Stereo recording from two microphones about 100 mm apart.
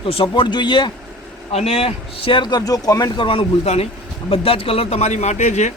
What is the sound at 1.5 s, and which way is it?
Speech, 90° left.